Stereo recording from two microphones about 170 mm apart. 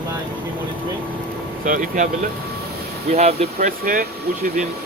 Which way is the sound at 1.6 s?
50° right (ahead or behind).